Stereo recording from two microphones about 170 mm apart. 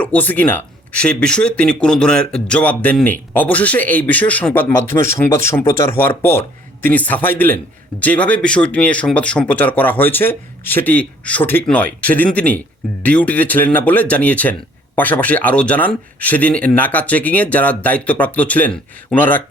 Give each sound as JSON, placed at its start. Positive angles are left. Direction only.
{"t": 0.0, "sound": "speech", "side_deg": 10}